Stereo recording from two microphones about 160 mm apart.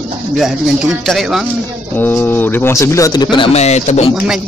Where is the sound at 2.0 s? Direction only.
15° left (ahead or behind); by 4.1 s 40° left (ahead or behind).